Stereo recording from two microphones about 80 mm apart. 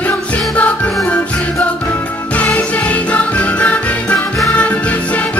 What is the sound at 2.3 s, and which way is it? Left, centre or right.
Music, centre.